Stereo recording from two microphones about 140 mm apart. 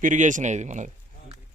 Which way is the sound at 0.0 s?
65° right (ahead or behind).